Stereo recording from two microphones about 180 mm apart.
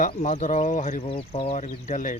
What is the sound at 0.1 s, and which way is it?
Speech, 40° left (ahead or behind).